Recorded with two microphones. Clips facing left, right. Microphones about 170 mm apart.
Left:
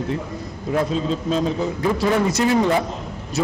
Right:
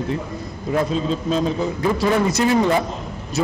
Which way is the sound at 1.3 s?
20° right (ahead or behind).